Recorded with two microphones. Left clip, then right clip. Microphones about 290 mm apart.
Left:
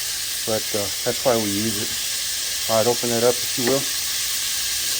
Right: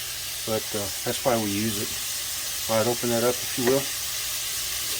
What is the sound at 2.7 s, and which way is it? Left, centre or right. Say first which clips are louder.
Speech: left 4 dB; centre.